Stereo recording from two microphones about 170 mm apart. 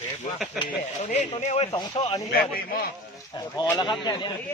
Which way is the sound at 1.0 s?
45° left (ahead or behind).